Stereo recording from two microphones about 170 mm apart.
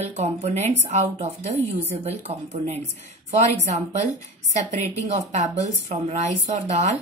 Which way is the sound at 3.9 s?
45° right (ahead or behind).